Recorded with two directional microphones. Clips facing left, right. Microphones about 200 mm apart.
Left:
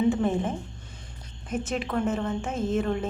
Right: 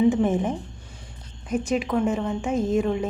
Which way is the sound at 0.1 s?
20° right (ahead or behind).